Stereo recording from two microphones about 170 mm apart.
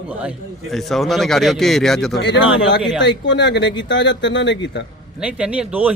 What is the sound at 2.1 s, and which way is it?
Speech, 90° left.